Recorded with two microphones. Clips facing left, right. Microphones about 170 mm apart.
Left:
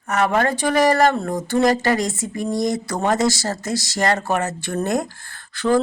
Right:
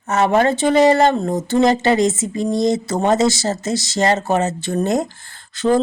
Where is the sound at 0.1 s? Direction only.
25° right (ahead or behind).